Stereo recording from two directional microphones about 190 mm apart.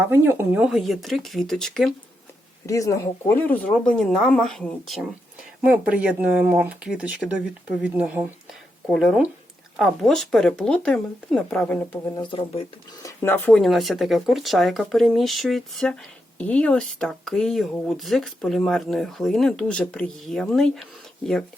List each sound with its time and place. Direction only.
0.0 s speech: 10° right (ahead or behind)
2.6 s speech: 15° left (ahead or behind)
12.1 s speech: 25° left (ahead or behind); by 20.8 s centre (ahead or behind)